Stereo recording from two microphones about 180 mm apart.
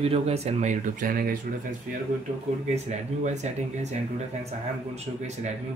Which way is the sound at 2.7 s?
40° right (ahead or behind).